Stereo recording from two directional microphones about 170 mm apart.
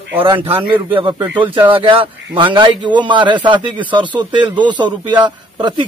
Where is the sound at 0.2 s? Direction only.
30° right (ahead or behind).